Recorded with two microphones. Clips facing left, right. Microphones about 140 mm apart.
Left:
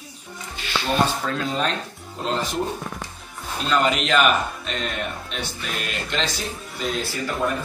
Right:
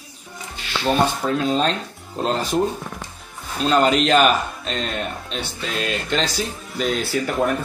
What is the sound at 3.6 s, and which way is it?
A man's voice, 35° right (ahead or behind).